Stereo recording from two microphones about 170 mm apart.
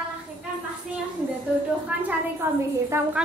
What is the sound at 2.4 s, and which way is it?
Speech, 15° right (ahead or behind).